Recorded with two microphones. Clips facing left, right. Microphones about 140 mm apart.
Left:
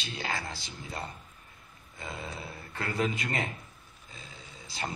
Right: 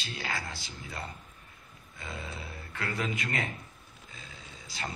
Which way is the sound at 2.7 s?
30° left (ahead or behind).